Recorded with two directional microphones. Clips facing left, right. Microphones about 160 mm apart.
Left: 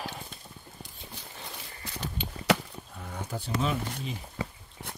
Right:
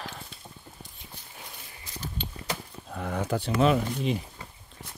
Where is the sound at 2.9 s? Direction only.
90° right.